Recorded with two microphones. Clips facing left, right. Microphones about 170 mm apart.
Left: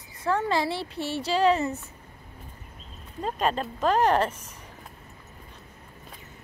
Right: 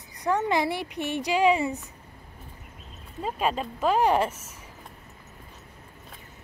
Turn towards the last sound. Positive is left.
turn(degrees=-10)  # may be behind; listen again after turning